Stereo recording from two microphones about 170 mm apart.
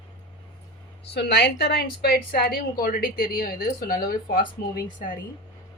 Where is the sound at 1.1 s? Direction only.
75° left (ahead or behind); by 4.4 s 55° left (ahead or behind).